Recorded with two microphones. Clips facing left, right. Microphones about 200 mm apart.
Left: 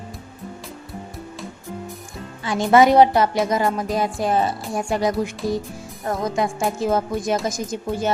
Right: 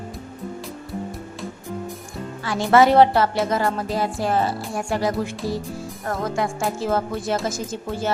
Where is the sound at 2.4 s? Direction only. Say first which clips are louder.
Left 1 dB; 20° left (ahead or behind).